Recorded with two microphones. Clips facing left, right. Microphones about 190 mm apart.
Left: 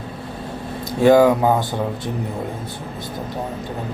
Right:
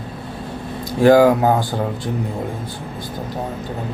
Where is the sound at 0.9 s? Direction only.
25° left (ahead or behind).